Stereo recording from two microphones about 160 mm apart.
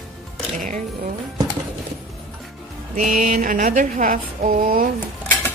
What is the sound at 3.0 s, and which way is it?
Speech, 50° right (ahead or behind).